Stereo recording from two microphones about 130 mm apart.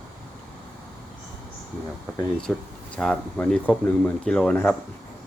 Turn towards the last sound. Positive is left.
turn(degrees=10)  # may be behind; listen again after turning